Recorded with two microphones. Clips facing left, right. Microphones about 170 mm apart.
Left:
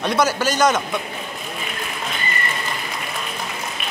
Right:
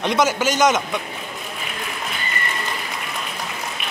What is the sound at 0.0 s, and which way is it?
Speech, 20° right (ahead or behind).